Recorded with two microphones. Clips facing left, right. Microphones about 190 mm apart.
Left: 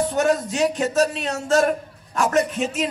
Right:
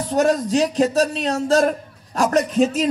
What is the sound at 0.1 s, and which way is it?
A man's voice, 35° right (ahead or behind).